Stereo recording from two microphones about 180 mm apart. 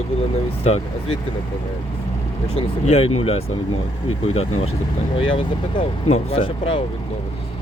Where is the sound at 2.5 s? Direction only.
35° left (ahead or behind).